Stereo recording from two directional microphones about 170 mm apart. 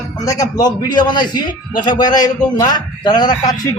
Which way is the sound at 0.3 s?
20° left (ahead or behind).